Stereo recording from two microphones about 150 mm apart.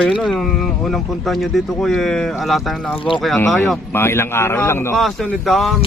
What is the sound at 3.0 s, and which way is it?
Speech, 35° left (ahead or behind).